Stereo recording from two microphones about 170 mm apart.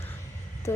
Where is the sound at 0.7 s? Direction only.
15° left (ahead or behind).